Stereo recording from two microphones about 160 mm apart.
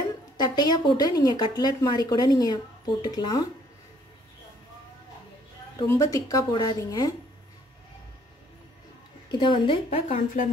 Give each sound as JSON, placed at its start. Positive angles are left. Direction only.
{"t": 0.4, "sound": "a woman's voice", "side_deg": 25}
{"t": 5.9, "sound": "a woman's voice", "side_deg": 20}
{"t": 9.3, "sound": "a woman's voice", "side_deg": 30}
{"t": 10.1, "sound": "speech", "side_deg": 55}